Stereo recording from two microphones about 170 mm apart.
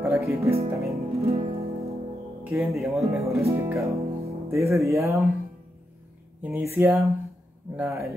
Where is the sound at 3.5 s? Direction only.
15° right (ahead or behind).